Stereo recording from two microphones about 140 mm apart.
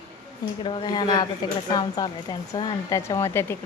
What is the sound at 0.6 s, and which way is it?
A woman's voice, 35° left (ahead or behind).